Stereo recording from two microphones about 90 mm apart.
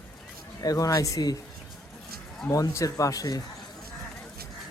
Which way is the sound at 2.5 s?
40° left (ahead or behind).